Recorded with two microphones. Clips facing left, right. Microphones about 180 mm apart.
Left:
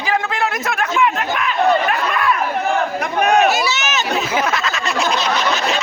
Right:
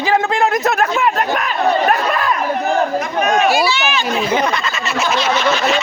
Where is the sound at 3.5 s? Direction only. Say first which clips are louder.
Right 3 dB; 45° left (ahead or behind).